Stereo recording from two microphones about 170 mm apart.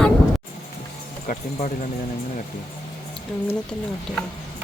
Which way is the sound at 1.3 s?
45° left (ahead or behind).